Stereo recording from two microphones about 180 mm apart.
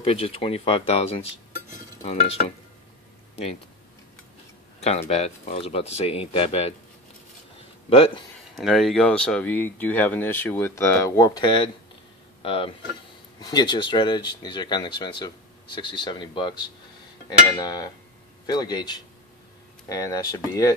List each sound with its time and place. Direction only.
0.0 s speech: 35° left (ahead or behind)
4.7 s speech: 35° left (ahead or behind)
7.9 s speech: 30° left (ahead or behind)
8.5 s speech: centre (ahead or behind); by 20.7 s 20° left (ahead or behind)